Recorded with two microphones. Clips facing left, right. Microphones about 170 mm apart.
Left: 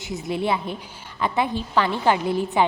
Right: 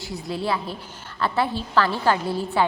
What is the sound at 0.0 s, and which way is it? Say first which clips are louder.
A woman's voice: left 2 dB; 20° left (ahead or behind).